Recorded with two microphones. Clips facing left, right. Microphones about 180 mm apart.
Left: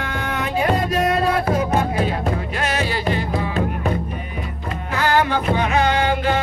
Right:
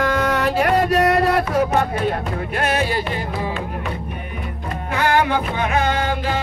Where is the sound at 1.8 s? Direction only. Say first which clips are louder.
Even; 55° right (ahead or behind).